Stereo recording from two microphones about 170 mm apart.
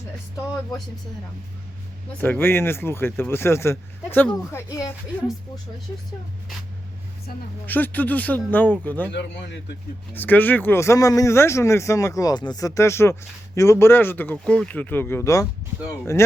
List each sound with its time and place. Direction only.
2.2 s speech: 10° left (ahead or behind)
7.7 s speech: 10° left (ahead or behind)
9.1 s speech: 90° left
10.2 s speech: 10° left (ahead or behind)